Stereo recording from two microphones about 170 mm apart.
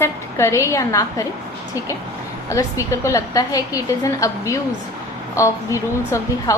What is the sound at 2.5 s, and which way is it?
A woman's voice, 20° left (ahead or behind).